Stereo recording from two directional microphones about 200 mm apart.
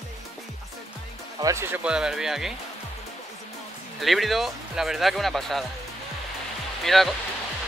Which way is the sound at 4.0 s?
Centre (ahead or behind).